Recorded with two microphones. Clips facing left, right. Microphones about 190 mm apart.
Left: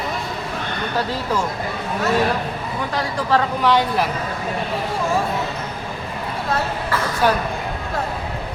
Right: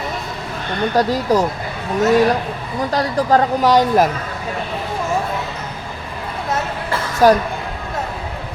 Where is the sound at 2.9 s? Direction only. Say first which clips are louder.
Right 5 dB; 40° right (ahead or behind).